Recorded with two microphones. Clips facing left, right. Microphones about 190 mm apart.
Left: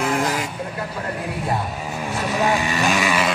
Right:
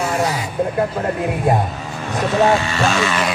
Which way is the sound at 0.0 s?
55° left (ahead or behind).